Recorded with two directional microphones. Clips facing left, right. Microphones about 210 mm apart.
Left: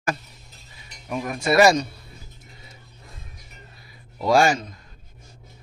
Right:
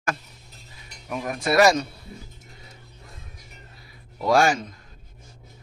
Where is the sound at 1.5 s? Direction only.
Centre (ahead or behind).